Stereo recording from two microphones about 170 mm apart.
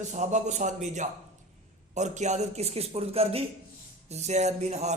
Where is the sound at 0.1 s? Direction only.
45° right (ahead or behind).